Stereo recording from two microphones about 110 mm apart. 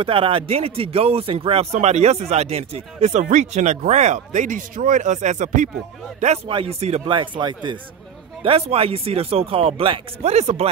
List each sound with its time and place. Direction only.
0.0 s speech: 55° right (ahead or behind); by 5.7 s 90° right
6.2 s speech: 75° right (ahead or behind)
6.5 s speech: 65° right (ahead or behind)
7.1 s speech: 45° right (ahead or behind)
8.5 s speech: 65° right (ahead or behind)
10.3 s speech: 80° right